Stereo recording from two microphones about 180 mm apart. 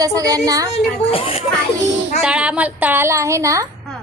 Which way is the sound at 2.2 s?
5° right (ahead or behind).